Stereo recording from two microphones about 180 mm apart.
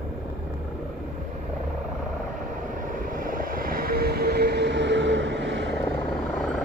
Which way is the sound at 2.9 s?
50° right (ahead or behind).